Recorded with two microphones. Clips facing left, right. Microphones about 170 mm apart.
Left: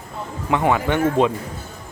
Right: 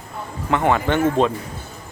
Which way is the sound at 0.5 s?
10° left (ahead or behind).